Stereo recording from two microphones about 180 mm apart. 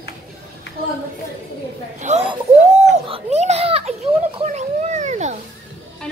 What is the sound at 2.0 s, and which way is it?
Speech, 40° right (ahead or behind).